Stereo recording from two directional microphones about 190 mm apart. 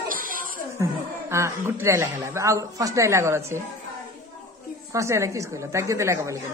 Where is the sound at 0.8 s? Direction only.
15° right (ahead or behind).